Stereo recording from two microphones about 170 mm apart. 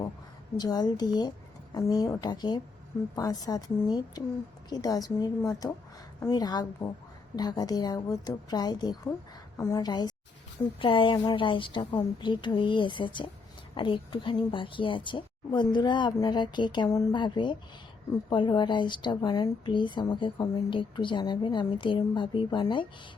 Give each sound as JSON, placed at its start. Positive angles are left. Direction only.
{"t": 0.6, "sound": "a woman's voice", "side_deg": 25}